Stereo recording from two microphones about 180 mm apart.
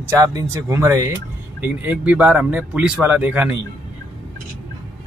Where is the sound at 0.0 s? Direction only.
20° right (ahead or behind).